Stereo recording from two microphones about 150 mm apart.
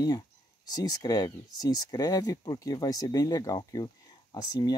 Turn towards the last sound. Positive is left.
turn(degrees=30)  # may be behind; listen again after turning